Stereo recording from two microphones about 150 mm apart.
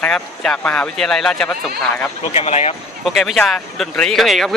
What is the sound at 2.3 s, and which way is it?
Speech, 45° left (ahead or behind).